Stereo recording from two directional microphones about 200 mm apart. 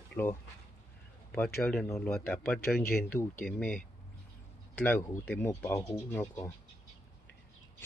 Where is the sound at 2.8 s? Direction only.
50° left (ahead or behind).